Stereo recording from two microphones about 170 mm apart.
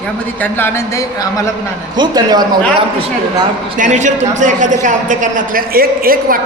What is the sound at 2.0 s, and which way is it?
Speech, 25° right (ahead or behind).